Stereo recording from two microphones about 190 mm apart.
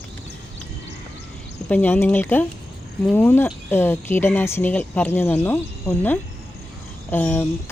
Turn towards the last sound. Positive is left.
turn(degrees=10)  # may be behind; listen again after turning